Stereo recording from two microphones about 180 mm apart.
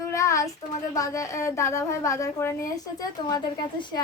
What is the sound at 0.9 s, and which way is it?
A woman's voice, 20° left (ahead or behind).